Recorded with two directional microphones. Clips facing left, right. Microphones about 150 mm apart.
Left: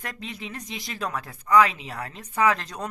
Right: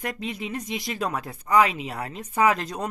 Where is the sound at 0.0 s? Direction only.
15° right (ahead or behind).